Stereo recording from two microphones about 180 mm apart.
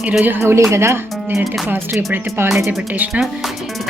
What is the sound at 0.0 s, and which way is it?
Speech, 10° right (ahead or behind).